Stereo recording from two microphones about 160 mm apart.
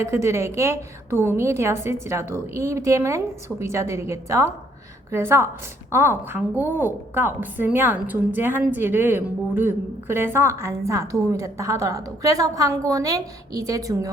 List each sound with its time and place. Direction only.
0.0 s a woman's voice: 15° right (ahead or behind)